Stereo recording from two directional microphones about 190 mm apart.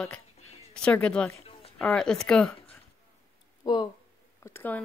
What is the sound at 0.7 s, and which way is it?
Speech, 5° left (ahead or behind).